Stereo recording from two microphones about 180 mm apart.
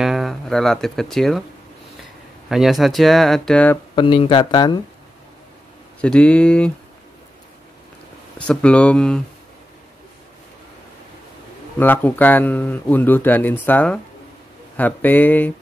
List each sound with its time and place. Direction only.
0.0 s speech: centre (ahead or behind)
2.5 s speech: centre (ahead or behind)
3.9 s speech: 30° left (ahead or behind)
5.9 s speech: 5° left (ahead or behind)
8.4 s speech: 5° left (ahead or behind)
11.8 s speech: 10° left (ahead or behind)